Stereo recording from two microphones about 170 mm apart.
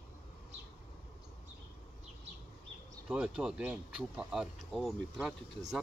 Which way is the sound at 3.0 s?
5° right (ahead or behind).